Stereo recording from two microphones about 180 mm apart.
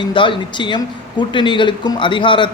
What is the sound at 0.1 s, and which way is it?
A man's voice, 25° left (ahead or behind).